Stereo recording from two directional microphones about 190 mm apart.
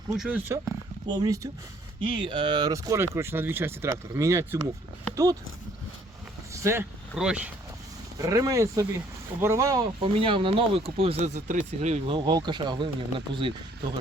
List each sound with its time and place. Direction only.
0.2 s speech: 10° right (ahead or behind)
6.5 s vehicle: 15° right (ahead or behind)
7.1 s speech: 5° right (ahead or behind)
8.2 s speech: 20° right (ahead or behind)
10.0 s speech: 25° right (ahead or behind)